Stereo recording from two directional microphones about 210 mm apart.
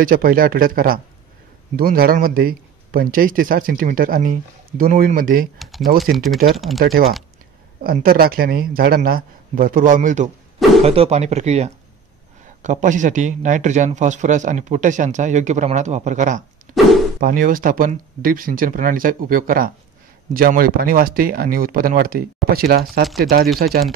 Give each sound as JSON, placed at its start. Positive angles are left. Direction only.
{"t": 0.0, "sound": "speech", "side_deg": -45}
{"t": 5.6, "sound": "speech", "side_deg": 0}
{"t": 6.8, "sound": "speech", "side_deg": -45}
{"t": 23.0, "sound": "speech", "side_deg": 0}